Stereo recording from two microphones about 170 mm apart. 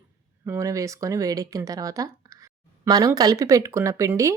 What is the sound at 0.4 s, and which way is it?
Speech, 15° right (ahead or behind).